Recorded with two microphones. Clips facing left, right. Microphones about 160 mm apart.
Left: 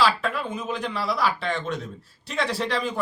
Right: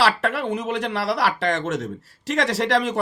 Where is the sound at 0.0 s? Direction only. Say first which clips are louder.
Right 2 dB; 80° right.